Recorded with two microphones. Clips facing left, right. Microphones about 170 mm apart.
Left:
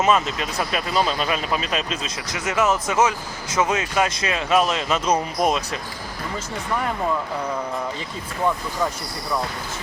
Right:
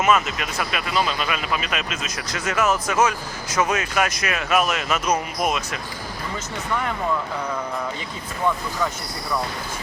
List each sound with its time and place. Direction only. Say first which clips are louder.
0.0 s speech: even; 30° left (ahead or behind)